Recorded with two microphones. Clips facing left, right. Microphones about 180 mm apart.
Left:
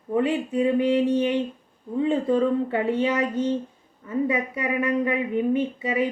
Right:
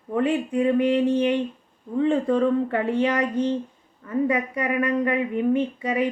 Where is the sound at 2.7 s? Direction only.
25° left (ahead or behind).